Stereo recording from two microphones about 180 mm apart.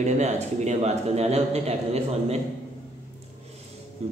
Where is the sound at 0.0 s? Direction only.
40° right (ahead or behind).